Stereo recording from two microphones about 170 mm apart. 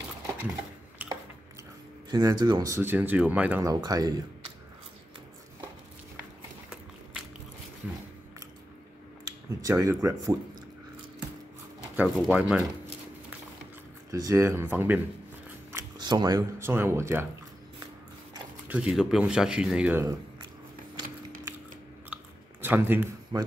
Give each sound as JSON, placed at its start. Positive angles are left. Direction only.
{"t": 1.0, "sound": "a sound", "side_deg": -10}
{"t": 2.0, "sound": "speech", "side_deg": -25}
{"t": 3.6, "sound": "speech", "side_deg": -20}
{"t": 9.2, "sound": "speech", "side_deg": -20}
{"t": 12.0, "sound": "speech", "side_deg": -10}
{"t": 14.1, "sound": "speech", "side_deg": -20}
{"t": 15.7, "sound": "speech", "side_deg": -25}
{"t": 18.7, "sound": "speech", "side_deg": -5}
{"t": 22.1, "sound": "chewing", "side_deg": -10}
{"t": 23.3, "sound": "speech", "side_deg": -25}